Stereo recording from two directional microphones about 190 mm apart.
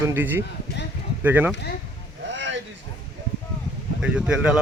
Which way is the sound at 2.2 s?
75° right (ahead or behind).